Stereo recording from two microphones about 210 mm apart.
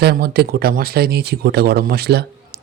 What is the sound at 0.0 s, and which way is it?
Speech, 50° right (ahead or behind).